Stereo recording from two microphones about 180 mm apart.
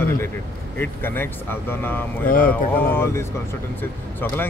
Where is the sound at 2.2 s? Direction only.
50° left (ahead or behind).